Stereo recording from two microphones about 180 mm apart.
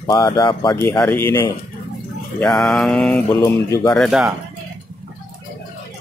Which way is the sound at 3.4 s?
20° left (ahead or behind).